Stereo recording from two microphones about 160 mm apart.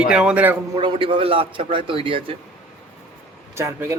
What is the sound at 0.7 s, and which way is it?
A man's voice, 30° right (ahead or behind).